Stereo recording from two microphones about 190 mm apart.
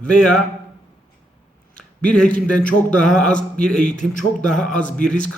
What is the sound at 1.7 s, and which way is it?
A man's voice, 5° left (ahead or behind).